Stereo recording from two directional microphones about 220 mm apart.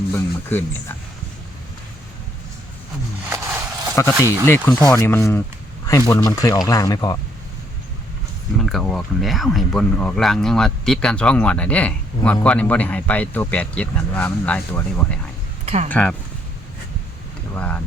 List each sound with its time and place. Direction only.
0.1 s speech: 10° left (ahead or behind)
3.2 s a sound: 10° right (ahead or behind)
4.4 s speech: 10° left (ahead or behind)
8.6 s speech: centre (ahead or behind)
15.6 s speech: 30° right (ahead or behind)
15.9 s speech: 5° left (ahead or behind)
17.5 s speech: 10° left (ahead or behind)